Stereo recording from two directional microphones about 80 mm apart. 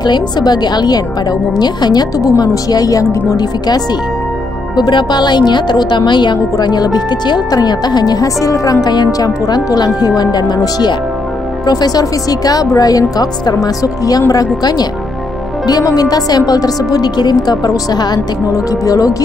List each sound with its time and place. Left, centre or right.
0.0 s speech: left
3.3 s speech: left
6.5 s speech: left
8.8 s speech: left
18.5 s speech: left